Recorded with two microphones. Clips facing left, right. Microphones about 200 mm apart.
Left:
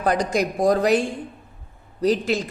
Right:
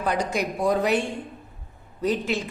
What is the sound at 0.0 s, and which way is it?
A woman's voice, 40° left (ahead or behind).